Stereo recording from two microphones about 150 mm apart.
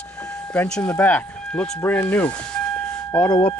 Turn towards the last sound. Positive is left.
turn(degrees=10)  # may be behind; listen again after turning